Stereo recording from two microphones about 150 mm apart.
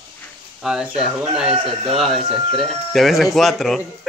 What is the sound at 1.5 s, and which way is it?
Speech, 35° right (ahead or behind).